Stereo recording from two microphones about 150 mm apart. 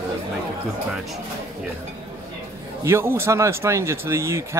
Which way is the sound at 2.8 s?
15° right (ahead or behind).